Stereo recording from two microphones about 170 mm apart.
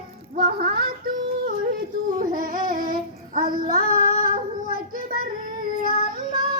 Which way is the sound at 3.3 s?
55° right (ahead or behind).